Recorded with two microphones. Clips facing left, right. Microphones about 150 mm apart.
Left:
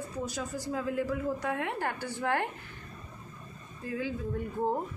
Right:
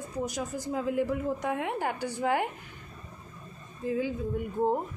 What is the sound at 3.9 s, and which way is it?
Speech, 15° right (ahead or behind).